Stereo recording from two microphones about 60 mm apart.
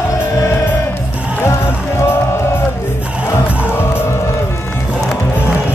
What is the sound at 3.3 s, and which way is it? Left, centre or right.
Music, left.